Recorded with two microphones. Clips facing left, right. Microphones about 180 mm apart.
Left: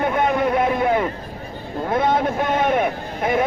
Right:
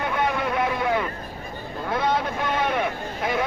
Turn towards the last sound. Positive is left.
turn(degrees=50)  # may be behind; listen again after turning